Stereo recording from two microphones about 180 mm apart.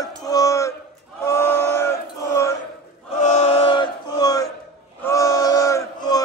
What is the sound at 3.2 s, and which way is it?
Chant, 40° left (ahead or behind).